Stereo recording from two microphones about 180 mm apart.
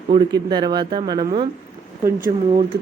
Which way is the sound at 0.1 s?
20° right (ahead or behind).